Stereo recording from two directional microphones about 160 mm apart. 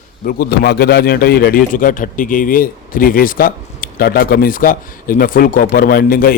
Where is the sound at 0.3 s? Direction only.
70° left (ahead or behind).